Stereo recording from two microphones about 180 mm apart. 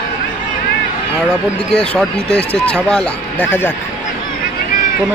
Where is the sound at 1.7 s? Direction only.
5° left (ahead or behind).